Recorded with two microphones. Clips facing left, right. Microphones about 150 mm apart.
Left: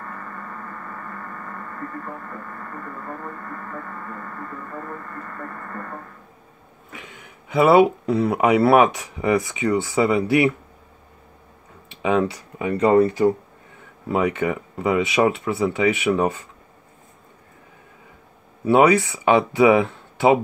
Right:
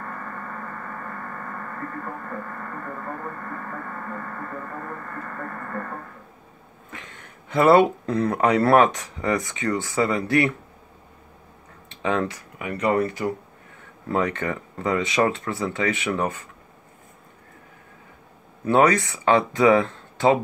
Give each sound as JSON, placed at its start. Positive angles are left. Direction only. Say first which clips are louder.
{"t": 6.9, "sound": "speech", "louder": "left 1 dB", "side_deg": 10}
{"t": 11.9, "sound": "speech", "louder": "left 4 dB", "side_deg": 10}
{"t": 12.5, "sound": "speech", "louder": "left 6 dB", "side_deg": 30}
{"t": 14.0, "sound": "speech", "louder": "left 3 dB", "side_deg": 10}
{"t": 18.6, "sound": "speech", "louder": "left 3 dB", "side_deg": 10}